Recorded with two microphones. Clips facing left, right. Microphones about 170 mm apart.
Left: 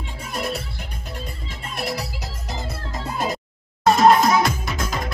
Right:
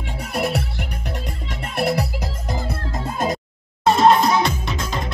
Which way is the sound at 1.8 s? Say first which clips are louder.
Right 7 dB; 60° right (ahead or behind).